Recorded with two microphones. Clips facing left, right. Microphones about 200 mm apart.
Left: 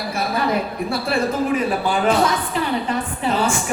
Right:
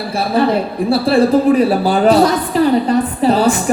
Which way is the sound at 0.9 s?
30° right (ahead or behind).